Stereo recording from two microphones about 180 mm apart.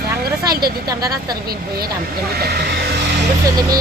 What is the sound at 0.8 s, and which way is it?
Speech, 20° right (ahead or behind).